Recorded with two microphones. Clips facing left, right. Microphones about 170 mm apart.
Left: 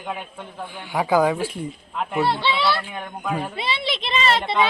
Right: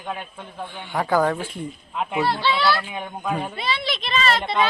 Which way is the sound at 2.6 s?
5° right (ahead or behind).